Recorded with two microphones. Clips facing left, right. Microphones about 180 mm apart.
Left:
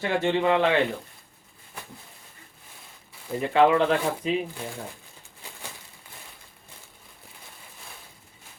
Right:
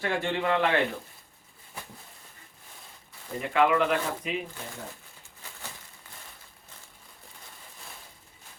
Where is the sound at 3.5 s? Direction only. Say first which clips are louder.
Left 4 dB; 30° left (ahead or behind).